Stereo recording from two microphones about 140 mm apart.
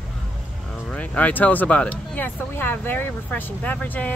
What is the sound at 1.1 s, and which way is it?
Speech, 10° left (ahead or behind).